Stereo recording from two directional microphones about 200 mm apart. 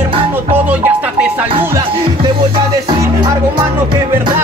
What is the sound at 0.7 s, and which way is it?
Music, 5° right (ahead or behind).